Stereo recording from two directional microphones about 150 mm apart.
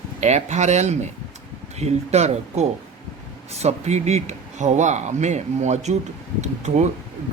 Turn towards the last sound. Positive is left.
turn(degrees=-50)  # may be behind; listen again after turning